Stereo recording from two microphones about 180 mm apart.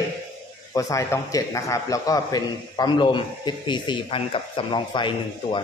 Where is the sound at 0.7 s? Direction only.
15° left (ahead or behind).